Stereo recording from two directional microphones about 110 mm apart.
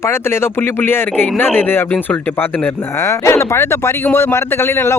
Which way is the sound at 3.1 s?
25° left (ahead or behind).